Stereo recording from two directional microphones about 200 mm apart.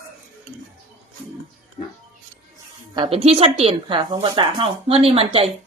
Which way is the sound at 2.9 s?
25° right (ahead or behind).